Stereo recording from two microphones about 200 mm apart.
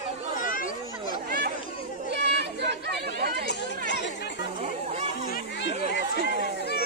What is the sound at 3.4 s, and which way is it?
Chatter, 65° left (ahead or behind).